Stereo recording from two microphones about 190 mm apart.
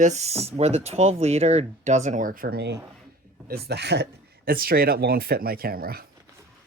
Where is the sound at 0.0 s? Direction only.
35° right (ahead or behind).